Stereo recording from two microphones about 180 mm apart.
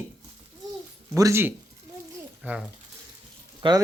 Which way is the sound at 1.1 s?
15° right (ahead or behind).